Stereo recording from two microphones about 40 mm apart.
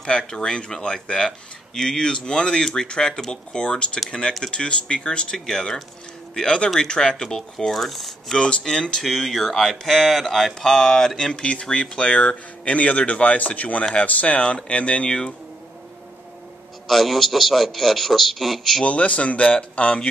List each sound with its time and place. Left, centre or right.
0.0 s a man's voice: centre
16.8 s a man's voice: centre
18.9 s speech: left